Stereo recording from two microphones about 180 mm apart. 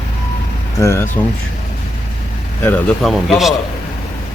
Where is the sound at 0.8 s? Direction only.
15° left (ahead or behind).